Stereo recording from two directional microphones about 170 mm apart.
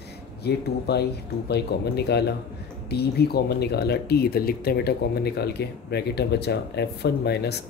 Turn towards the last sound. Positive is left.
turn(degrees=75)  # may be behind; listen again after turning